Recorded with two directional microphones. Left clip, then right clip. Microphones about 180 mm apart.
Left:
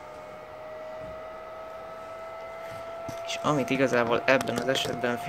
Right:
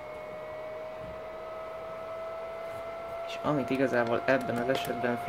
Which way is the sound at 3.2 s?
10° left (ahead or behind).